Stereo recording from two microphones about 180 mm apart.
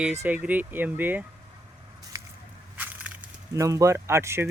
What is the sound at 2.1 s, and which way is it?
Squish, 20° right (ahead or behind).